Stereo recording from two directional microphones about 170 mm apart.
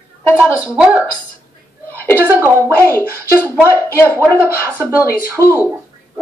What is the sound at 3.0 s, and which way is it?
Speech, 10° left (ahead or behind).